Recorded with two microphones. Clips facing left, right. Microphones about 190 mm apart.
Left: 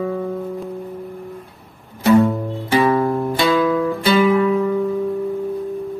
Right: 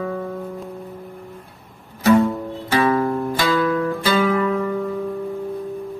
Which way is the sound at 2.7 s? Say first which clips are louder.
Left 2 dB; 20° left (ahead or behind).